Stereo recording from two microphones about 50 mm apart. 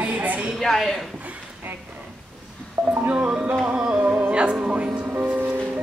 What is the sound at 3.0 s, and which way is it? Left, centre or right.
Music, right.